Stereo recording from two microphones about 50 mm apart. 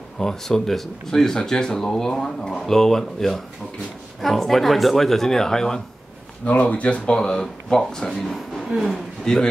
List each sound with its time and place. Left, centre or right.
0.2 s speech: centre
6.6 s speech: left
7.2 s a man's voice: centre